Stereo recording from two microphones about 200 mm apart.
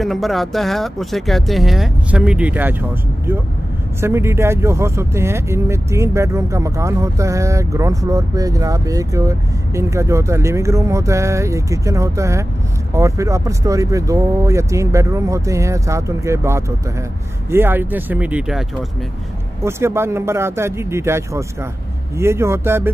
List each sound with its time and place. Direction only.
0.0 s speech: centre (ahead or behind)